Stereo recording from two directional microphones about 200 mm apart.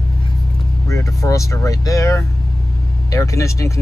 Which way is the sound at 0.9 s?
15° left (ahead or behind).